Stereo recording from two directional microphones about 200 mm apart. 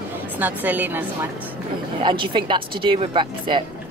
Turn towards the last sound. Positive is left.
turn(degrees=-25)  # may be behind; listen again after turning